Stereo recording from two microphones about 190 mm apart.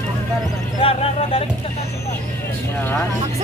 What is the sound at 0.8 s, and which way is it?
Speech, 30° left (ahead or behind).